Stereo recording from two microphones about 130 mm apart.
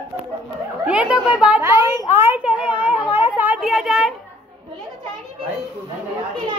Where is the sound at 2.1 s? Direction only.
15° right (ahead or behind).